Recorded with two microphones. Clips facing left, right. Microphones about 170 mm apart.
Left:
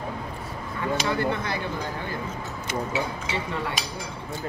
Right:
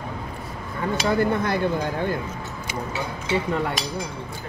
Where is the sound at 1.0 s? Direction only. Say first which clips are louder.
Right 8 dB; 50° right (ahead or behind).